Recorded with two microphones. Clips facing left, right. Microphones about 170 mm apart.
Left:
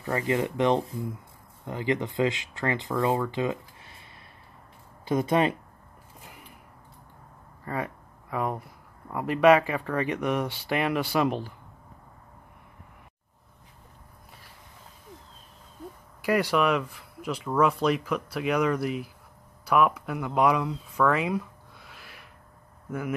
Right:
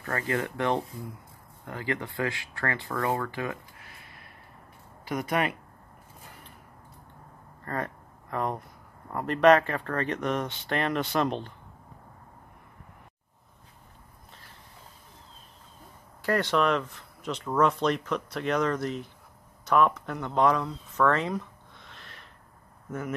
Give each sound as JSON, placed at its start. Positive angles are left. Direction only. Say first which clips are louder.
{"t": 0.0, "sound": "speech", "louder": "left 4 dB", "side_deg": 15}
{"t": 7.6, "sound": "a sound", "louder": "left 1 dB", "side_deg": 5}
{"t": 9.1, "sound": "speech", "louder": "left 1 dB", "side_deg": 5}
{"t": 16.2, "sound": "speech", "louder": "left 1 dB", "side_deg": 10}